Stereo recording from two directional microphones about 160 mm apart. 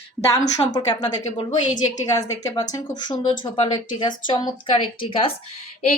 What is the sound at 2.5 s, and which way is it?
Speech, 30° left (ahead or behind).